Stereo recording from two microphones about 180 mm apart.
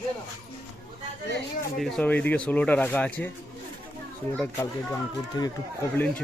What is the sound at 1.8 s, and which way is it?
Speech, 5° left (ahead or behind).